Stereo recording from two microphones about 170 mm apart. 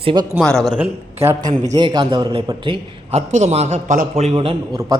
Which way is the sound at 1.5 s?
25° right (ahead or behind).